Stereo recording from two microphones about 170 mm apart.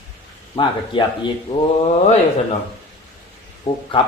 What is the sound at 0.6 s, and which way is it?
Speech, 30° left (ahead or behind).